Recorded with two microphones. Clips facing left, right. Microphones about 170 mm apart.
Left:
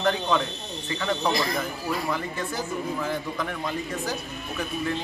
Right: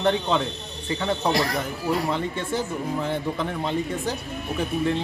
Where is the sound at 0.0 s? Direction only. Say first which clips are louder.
Right 2 dB; 25° right (ahead or behind).